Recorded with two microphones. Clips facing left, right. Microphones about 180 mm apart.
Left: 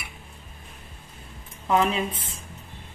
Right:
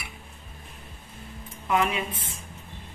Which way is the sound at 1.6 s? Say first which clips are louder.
Left 3 dB; 30° left (ahead or behind).